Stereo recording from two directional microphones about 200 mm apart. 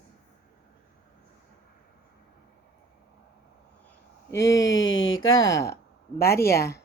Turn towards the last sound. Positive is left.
turn(degrees=15)  # may be behind; listen again after turning